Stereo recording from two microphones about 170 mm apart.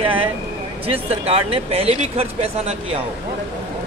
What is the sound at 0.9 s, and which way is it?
Speech, 35° right (ahead or behind).